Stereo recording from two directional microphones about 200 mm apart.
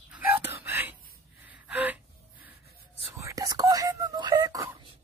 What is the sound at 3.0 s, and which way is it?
Whispering, 15° right (ahead or behind).